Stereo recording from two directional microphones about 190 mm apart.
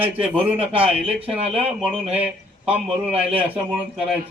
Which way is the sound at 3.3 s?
10° right (ahead or behind).